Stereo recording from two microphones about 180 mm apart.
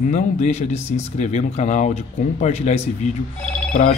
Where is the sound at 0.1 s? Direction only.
40° left (ahead or behind).